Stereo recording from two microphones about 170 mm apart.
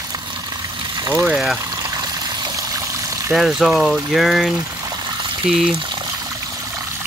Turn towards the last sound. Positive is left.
turn(degrees=-20)  # may be behind; listen again after turning